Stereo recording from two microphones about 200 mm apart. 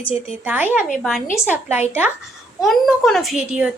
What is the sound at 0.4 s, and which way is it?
A woman's voice, 10° right (ahead or behind).